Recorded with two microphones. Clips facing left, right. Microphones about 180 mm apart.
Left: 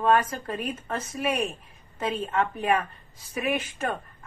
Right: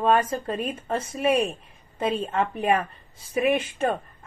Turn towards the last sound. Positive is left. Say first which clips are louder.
# right 5 dB
turn(degrees=-25)  # may be behind; listen again after turning